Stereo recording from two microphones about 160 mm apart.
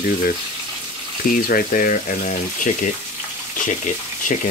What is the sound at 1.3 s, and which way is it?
Speech, 60° left (ahead or behind).